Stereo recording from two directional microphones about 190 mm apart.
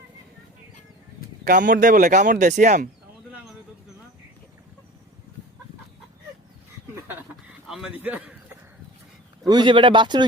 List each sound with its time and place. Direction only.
1.5 s speech: 45° right (ahead or behind)
6.9 s a sound: 10° right (ahead or behind)
9.5 s speech: 25° right (ahead or behind)